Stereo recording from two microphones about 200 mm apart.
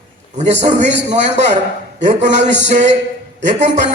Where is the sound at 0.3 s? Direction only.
35° right (ahead or behind).